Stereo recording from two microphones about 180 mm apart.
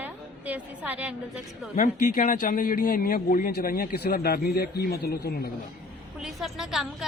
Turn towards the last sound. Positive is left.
turn(degrees=0)  # may be behind; listen again after turning